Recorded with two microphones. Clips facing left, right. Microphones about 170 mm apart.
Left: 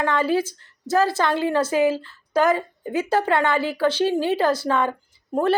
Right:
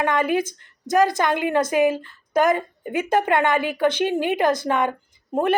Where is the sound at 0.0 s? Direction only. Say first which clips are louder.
Even; 15° right (ahead or behind).